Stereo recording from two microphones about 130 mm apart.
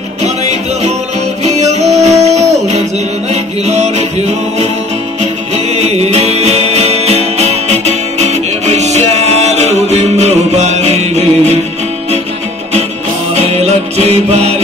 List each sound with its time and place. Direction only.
0.2 s music: 60° right (ahead or behind)
13.3 s music: 55° right (ahead or behind)